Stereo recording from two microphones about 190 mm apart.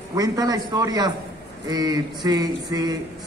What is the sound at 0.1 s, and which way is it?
A woman's voice, 20° right (ahead or behind).